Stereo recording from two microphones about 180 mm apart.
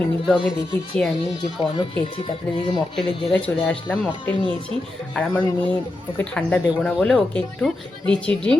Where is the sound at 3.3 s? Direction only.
5° left (ahead or behind).